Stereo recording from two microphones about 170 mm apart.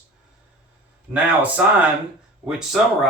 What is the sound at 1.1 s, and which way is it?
Speech, 10° right (ahead or behind).